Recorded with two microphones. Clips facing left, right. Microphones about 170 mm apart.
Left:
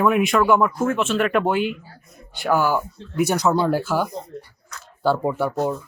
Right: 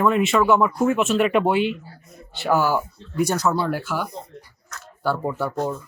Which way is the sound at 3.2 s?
10° left (ahead or behind).